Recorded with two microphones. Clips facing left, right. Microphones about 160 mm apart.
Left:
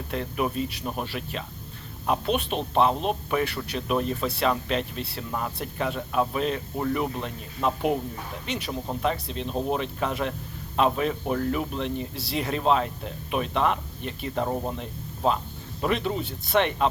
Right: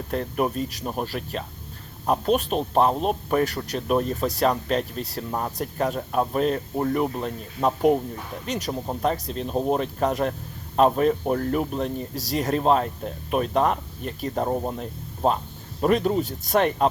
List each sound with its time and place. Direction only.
0.1 s speech: 40° right (ahead or behind)